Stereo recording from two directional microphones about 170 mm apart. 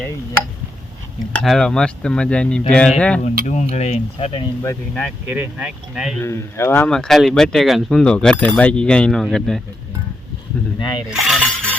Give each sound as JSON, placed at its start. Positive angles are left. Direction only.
{"t": 1.4, "sound": "speech", "side_deg": 5}
{"t": 3.4, "sound": "speech", "side_deg": 40}
{"t": 4.6, "sound": "speech", "side_deg": 15}
{"t": 5.3, "sound": "speech", "side_deg": -5}
{"t": 6.1, "sound": "speech", "side_deg": 15}
{"t": 10.8, "sound": "a sound", "side_deg": 25}
{"t": 11.1, "sound": "cutlery", "side_deg": 0}